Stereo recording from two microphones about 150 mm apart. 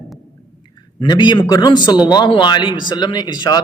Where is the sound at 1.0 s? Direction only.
30° left (ahead or behind).